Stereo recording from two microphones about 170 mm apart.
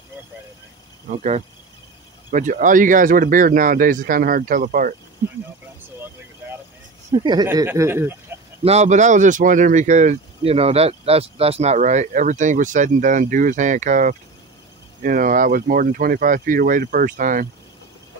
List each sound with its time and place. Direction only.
2.3 s speech: 50° right (ahead or behind)
7.1 s speech: 35° right (ahead or behind)
7.4 s speech: 15° right (ahead or behind)
8.6 s speech: 45° right (ahead or behind)